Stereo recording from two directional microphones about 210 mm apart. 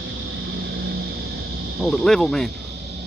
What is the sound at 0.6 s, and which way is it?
Vehicle, 55° right (ahead or behind).